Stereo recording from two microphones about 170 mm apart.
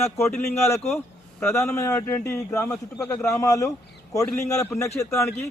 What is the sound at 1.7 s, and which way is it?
Speech, 15° left (ahead or behind).